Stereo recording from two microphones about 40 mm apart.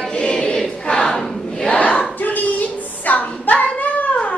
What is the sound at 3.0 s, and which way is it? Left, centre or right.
Child singing, left.